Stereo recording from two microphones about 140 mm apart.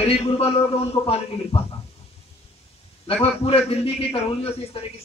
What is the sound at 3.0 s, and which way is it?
A man's voice, 45° left (ahead or behind).